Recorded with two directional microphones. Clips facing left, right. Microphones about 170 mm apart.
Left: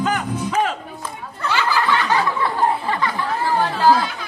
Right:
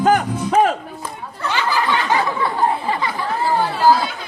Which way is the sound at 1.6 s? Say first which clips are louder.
Even; 15° right (ahead or behind).